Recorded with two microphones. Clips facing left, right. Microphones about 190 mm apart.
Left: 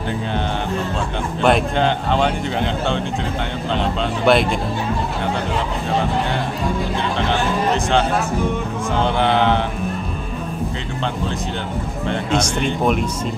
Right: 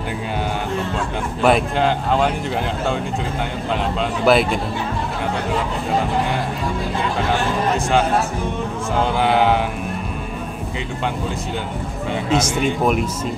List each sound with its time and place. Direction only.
1.4 s speech: 5° right (ahead or behind)
9.0 s speech: 5° right (ahead or behind)
12.1 s speech: 5° right (ahead or behind)